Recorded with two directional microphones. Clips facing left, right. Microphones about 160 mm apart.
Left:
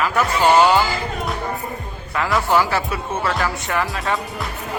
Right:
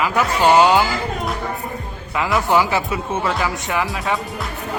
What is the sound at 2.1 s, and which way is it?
Speech, 15° right (ahead or behind).